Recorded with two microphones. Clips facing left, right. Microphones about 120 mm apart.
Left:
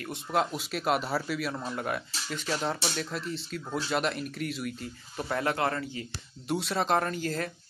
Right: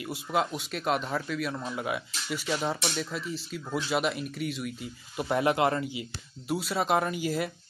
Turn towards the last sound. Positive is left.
turn(degrees=-10)  # may be behind; listen again after turning